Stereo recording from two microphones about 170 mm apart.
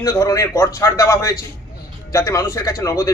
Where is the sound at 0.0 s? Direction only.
20° left (ahead or behind).